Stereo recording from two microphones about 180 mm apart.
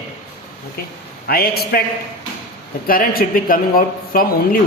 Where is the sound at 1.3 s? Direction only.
60° left (ahead or behind).